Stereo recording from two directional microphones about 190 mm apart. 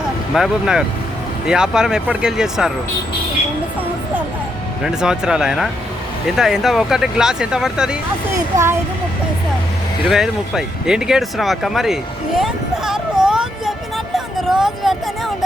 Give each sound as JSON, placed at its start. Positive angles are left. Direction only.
{"t": 0.3, "sound": "speech", "side_deg": -5}
{"t": 4.8, "sound": "speech", "side_deg": -5}
{"t": 8.4, "sound": "speech", "side_deg": -15}
{"t": 10.0, "sound": "a sound", "side_deg": 0}